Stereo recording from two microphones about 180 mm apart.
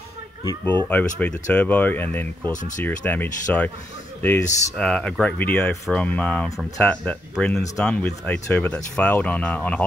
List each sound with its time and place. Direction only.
0.8 s speech: 10° left (ahead or behind)